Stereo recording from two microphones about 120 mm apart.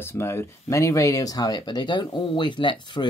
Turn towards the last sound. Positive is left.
turn(degrees=40)  # may be behind; listen again after turning